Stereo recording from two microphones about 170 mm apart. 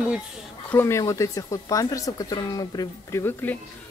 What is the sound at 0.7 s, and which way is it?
Speech, 15° left (ahead or behind).